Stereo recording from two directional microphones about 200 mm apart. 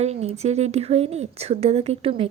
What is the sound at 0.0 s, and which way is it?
A woman's voice, 35° right (ahead or behind).